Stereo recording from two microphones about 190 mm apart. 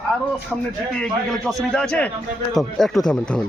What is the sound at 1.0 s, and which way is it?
Speech, centre (ahead or behind).